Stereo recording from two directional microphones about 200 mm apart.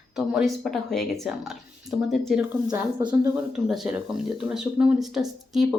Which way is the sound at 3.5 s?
5° right (ahead or behind).